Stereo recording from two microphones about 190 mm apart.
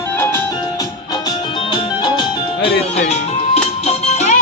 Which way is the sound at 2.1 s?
30° left (ahead or behind).